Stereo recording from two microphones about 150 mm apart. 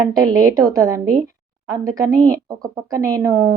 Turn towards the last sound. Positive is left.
turn(degrees=-15)  # may be behind; listen again after turning